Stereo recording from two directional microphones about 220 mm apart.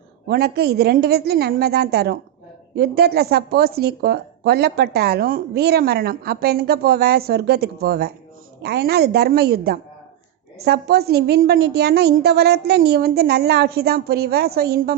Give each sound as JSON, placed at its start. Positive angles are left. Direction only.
{"t": 0.3, "sound": "speech", "side_deg": -45}